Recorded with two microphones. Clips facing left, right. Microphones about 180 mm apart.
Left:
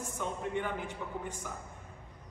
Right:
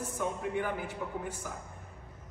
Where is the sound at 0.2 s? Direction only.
5° right (ahead or behind).